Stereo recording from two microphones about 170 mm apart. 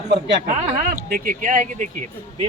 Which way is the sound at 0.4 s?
55° right (ahead or behind).